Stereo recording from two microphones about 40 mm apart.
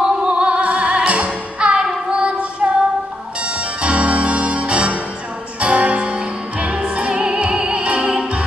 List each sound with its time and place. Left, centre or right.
0.2 s music: right
2.0 s child singing: right
3.3 s music: right
7.8 s opera: right
8.1 s music: right